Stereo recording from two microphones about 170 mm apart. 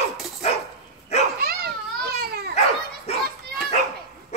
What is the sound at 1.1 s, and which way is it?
Dog, 40° left (ahead or behind).